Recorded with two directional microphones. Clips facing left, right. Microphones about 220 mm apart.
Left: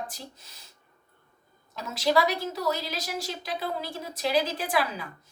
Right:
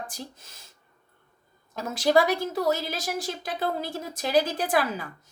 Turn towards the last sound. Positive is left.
turn(degrees=-45)  # may be behind; listen again after turning